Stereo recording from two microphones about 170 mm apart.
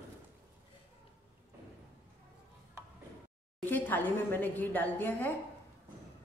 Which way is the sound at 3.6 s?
10° left (ahead or behind).